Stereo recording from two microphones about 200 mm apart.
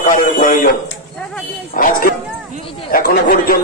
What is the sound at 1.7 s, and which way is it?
A man's voice, 45° left (ahead or behind).